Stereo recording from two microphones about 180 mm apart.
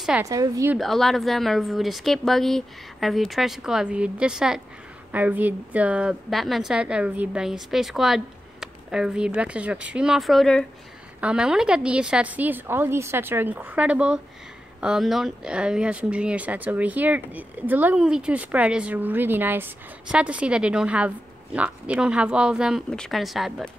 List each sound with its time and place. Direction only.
0.2 s a woman's voice: 20° right (ahead or behind)
0.7 s a woman's voice: centre (ahead or behind)